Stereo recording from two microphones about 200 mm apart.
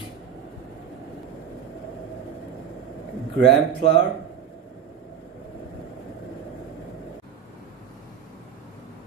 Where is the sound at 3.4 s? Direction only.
60° right (ahead or behind).